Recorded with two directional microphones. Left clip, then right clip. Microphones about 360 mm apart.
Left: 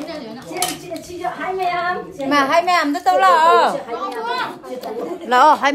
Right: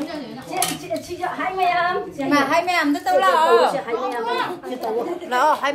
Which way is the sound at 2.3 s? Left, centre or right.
Left.